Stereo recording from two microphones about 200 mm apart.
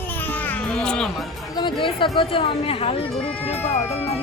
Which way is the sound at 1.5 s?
25° left (ahead or behind).